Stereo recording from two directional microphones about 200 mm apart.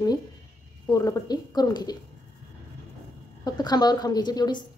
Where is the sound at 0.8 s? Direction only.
20° left (ahead or behind).